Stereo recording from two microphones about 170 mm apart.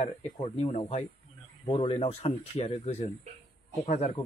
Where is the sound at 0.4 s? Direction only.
40° left (ahead or behind).